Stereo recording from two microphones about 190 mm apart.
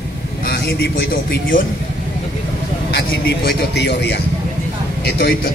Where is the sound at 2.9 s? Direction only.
55° left (ahead or behind).